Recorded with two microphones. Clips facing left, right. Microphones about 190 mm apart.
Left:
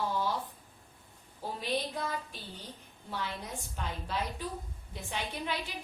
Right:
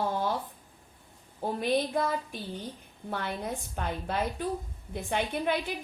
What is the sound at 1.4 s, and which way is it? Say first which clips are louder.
A woman's voice: right 7 dB; 55° right (ahead or behind).